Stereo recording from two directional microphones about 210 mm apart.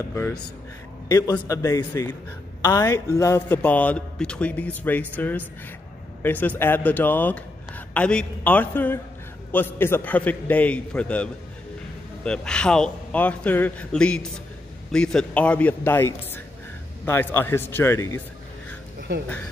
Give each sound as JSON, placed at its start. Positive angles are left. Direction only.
{"t": 0.1, "sound": "speech", "side_deg": 10}
{"t": 12.3, "sound": "a man's voice", "side_deg": 5}
{"t": 18.9, "sound": "a sound", "side_deg": -50}